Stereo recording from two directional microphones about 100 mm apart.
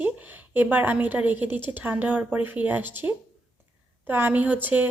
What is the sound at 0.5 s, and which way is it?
A woman's voice, 20° right (ahead or behind).